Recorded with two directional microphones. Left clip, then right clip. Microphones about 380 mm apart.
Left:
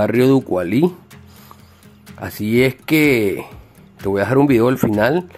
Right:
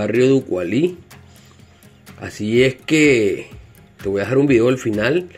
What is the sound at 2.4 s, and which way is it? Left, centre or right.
Speech, centre.